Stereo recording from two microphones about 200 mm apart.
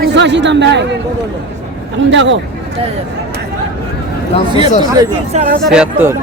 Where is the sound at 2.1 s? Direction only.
65° right (ahead or behind).